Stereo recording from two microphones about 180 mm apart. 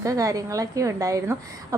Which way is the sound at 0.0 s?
20° right (ahead or behind).